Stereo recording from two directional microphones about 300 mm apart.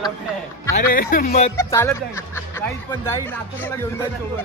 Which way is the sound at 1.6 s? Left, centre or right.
Centre.